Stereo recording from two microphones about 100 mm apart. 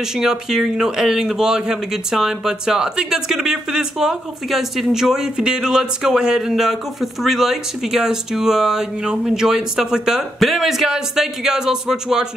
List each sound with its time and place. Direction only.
0.1 s a man's voice: 5° right (ahead or behind)